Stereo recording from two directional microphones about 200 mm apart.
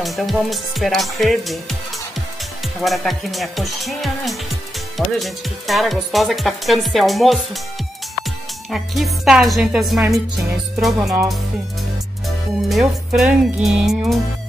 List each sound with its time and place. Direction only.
0.0 s speech: centre (ahead or behind)
2.8 s speech: centre (ahead or behind)
12.6 s speech: centre (ahead or behind)